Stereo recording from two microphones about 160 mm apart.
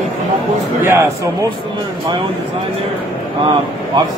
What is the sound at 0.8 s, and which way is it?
Speech, 15° right (ahead or behind).